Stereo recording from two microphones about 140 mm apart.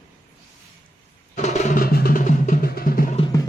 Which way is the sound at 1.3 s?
55° left (ahead or behind).